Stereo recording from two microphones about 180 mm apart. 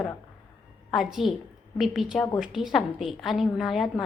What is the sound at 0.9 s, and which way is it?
A woman's voice, centre (ahead or behind).